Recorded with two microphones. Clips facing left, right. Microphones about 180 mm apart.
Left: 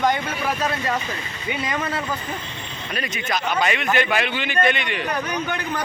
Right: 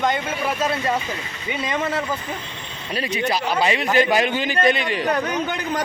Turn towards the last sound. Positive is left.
turn(degrees=-35)  # may be behind; listen again after turning